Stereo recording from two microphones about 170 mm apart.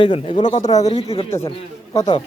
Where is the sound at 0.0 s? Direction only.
30° left (ahead or behind).